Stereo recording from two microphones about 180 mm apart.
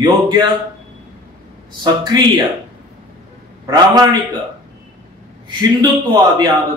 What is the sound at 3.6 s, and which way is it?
Speech, 20° right (ahead or behind).